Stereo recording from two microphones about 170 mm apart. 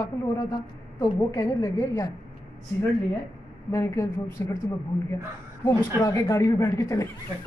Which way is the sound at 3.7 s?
15° left (ahead or behind).